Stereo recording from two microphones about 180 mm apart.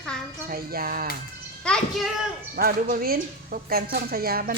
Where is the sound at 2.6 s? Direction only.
55° right (ahead or behind).